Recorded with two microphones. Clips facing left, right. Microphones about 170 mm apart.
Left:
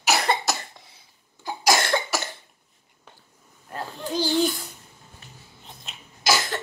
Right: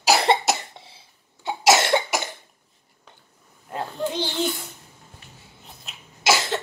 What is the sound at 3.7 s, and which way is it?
Babbling, 20° right (ahead or behind).